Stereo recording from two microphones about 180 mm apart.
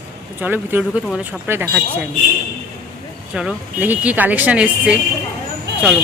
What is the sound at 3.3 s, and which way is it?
Speech, 5° right (ahead or behind).